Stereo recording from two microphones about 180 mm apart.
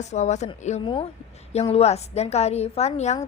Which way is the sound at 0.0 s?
40° left (ahead or behind).